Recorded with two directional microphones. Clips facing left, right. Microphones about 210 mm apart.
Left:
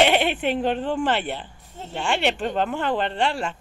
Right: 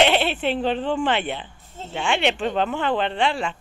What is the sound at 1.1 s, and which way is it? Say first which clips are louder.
Speech: right 1 dB; 40° left (ahead or behind).